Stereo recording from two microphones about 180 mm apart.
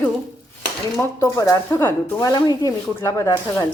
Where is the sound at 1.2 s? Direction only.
15° left (ahead or behind).